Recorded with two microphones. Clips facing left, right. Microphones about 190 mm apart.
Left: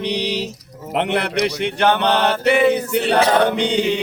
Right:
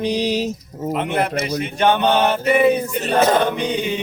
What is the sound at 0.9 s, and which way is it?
A man's voice, 75° left (ahead or behind).